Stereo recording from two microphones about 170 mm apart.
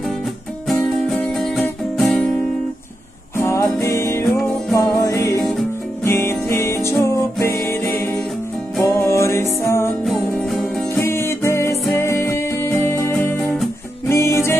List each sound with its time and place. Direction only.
0.7 s music: centre (ahead or behind)
3.3 s music: 15° left (ahead or behind)
10.0 s music: centre (ahead or behind)
11.0 s music: 15° left (ahead or behind)